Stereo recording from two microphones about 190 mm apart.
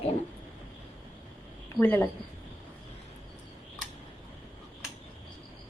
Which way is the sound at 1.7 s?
10° left (ahead or behind).